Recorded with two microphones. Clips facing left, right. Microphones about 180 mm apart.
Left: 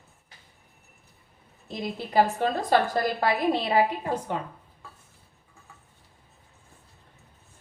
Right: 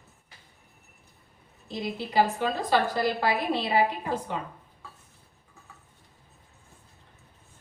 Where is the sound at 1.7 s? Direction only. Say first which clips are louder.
Even; 50° left (ahead or behind).